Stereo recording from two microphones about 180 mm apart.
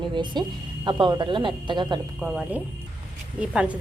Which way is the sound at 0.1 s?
25° right (ahead or behind).